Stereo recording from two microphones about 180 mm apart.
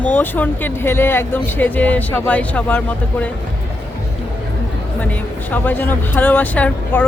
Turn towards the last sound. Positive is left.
turn(degrees=10)  # may be behind; listen again after turning